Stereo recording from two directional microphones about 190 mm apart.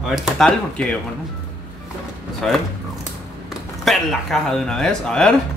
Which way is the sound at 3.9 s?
Centre (ahead or behind).